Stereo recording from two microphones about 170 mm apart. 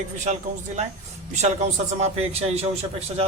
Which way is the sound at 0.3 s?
40° right (ahead or behind).